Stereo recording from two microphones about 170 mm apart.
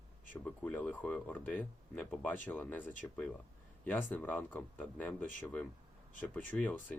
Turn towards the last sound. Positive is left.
turn(degrees=10)  # may be behind; listen again after turning